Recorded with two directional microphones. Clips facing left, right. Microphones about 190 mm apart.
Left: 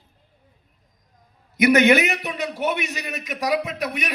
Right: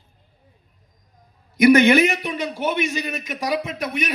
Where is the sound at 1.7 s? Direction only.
30° right (ahead or behind).